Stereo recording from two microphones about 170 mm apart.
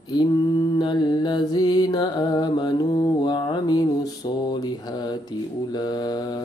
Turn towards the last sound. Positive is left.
turn(degrees=25)  # may be behind; listen again after turning